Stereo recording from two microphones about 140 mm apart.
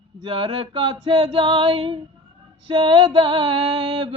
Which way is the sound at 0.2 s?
40° right (ahead or behind).